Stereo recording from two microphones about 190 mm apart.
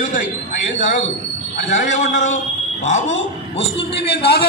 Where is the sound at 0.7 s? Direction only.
40° left (ahead or behind).